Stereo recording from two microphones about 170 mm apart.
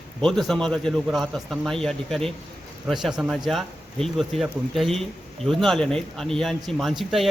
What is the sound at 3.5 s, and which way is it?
A man's voice, centre (ahead or behind).